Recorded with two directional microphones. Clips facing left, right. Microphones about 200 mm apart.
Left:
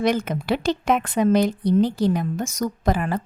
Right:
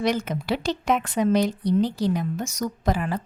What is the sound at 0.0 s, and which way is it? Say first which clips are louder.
A woman's voice: left 3 dB; 55° left (ahead or behind).